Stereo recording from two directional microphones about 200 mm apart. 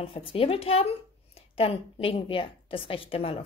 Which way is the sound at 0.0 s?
25° left (ahead or behind).